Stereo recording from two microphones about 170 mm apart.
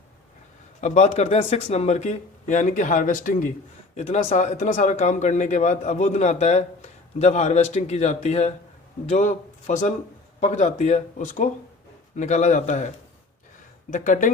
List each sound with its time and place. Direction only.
0.8 s a man's voice: 40° left (ahead or behind)
13.9 s speech: 50° left (ahead or behind)